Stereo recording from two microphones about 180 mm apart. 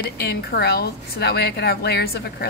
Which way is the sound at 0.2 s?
65° left (ahead or behind).